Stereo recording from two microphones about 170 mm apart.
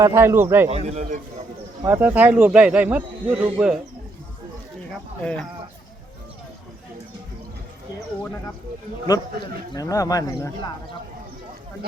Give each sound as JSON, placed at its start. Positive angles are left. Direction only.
{"t": 0.0, "sound": "speech", "side_deg": -15}
{"t": 0.7, "sound": "a man's voice", "side_deg": -40}
{"t": 1.8, "sound": "speech", "side_deg": -15}
{"t": 5.2, "sound": "speech", "side_deg": 5}
{"t": 9.7, "sound": "speech", "side_deg": 20}